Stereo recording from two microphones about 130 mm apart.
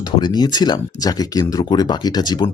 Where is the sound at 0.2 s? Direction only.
35° left (ahead or behind).